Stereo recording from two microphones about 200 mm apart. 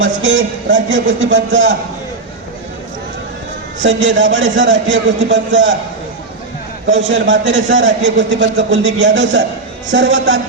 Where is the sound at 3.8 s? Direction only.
65° right (ahead or behind).